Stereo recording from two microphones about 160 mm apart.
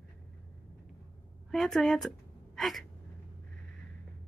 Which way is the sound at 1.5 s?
Centre (ahead or behind).